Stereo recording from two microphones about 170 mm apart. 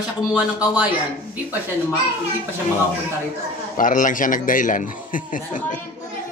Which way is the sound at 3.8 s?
50° left (ahead or behind).